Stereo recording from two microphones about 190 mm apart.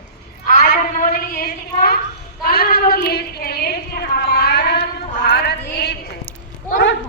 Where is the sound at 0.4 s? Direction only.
45° left (ahead or behind).